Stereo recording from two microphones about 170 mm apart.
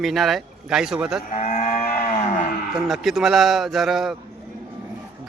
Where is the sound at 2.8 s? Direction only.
Centre (ahead or behind).